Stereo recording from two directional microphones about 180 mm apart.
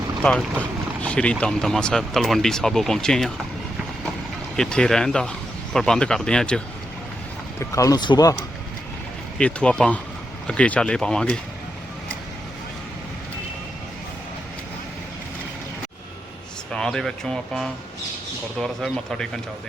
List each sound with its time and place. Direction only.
0.2 s speech: 5° left (ahead or behind)
4.5 s speech: 5° left (ahead or behind)
7.6 s speech: 20° left (ahead or behind)
9.4 s speech: 5° left (ahead or behind)
16.7 s speech: 5° left (ahead or behind)